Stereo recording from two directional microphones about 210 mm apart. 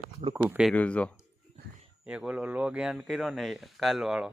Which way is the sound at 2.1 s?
5° right (ahead or behind).